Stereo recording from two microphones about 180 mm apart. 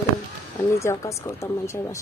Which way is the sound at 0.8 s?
15° left (ahead or behind).